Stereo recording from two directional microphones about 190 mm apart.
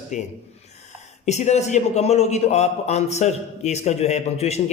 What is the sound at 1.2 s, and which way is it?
Speech, 35° left (ahead or behind).